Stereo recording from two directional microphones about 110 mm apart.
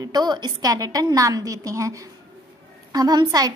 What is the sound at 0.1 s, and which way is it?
A woman's voice, 40° right (ahead or behind).